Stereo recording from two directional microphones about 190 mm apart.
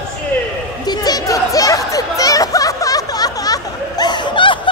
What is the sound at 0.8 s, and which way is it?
Chatter, 20° left (ahead or behind).